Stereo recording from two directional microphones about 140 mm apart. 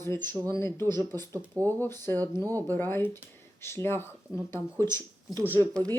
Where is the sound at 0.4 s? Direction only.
20° left (ahead or behind).